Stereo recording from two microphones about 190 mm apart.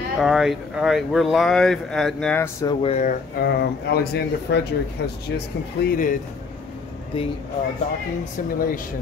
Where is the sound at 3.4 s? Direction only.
55° left (ahead or behind).